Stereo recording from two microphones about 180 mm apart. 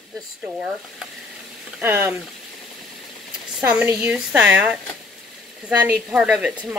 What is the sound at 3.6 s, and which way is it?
A woman's voice, 5° right (ahead or behind).